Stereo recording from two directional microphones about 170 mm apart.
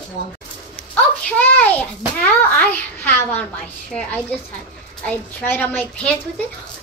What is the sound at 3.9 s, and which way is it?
A woman's voice, 5° left (ahead or behind).